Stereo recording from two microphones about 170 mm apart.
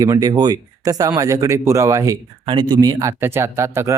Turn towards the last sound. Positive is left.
turn(degrees=-15)  # may be behind; listen again after turning